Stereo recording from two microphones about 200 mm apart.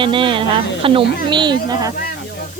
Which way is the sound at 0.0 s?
25° right (ahead or behind).